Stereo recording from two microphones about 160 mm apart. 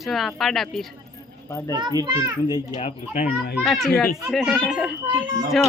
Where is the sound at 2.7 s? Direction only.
40° left (ahead or behind).